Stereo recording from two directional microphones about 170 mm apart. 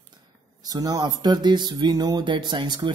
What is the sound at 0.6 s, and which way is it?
Speech, 20° right (ahead or behind).